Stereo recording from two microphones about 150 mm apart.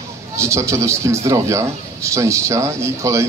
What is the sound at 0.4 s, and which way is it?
Speech, 20° right (ahead or behind).